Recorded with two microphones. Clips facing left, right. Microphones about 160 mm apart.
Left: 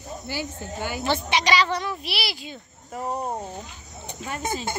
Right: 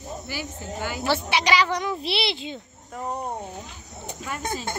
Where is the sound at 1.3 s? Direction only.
10° right (ahead or behind).